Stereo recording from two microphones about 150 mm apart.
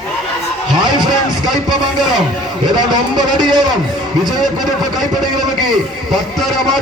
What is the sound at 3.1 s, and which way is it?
Speech, 30° right (ahead or behind).